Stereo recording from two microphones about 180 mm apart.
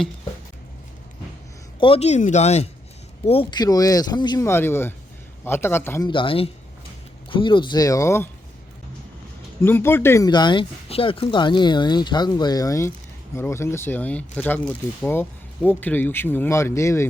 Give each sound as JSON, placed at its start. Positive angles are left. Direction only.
{"t": 1.8, "sound": "speech", "side_deg": 35}
{"t": 6.1, "sound": "speech", "side_deg": 30}
{"t": 9.6, "sound": "speech", "side_deg": 10}